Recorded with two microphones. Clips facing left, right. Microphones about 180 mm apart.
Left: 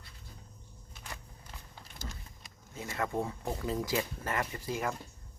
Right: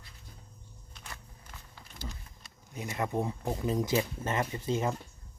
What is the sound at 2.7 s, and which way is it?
Speech, 20° right (ahead or behind).